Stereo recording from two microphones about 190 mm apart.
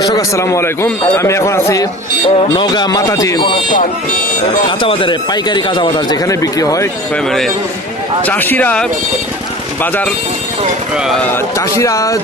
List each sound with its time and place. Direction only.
0.0 s a man's voice: 20° left (ahead or behind)
3.8 s speech: 45° left (ahead or behind)
4.8 s speech: 25° left (ahead or behind)
7.3 s a man's voice: centre (ahead or behind)
11.8 s a man's voice: 20° left (ahead or behind)